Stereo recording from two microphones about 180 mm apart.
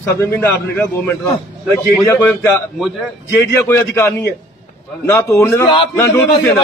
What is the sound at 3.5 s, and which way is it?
Speech, 15° left (ahead or behind).